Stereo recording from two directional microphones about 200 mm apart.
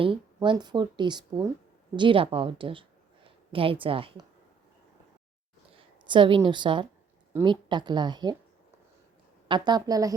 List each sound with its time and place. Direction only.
0.0 s a woman's voice: 25° right (ahead or behind)
5.7 s a woman's voice: 25° right (ahead or behind)
9.5 s speech: 20° right (ahead or behind)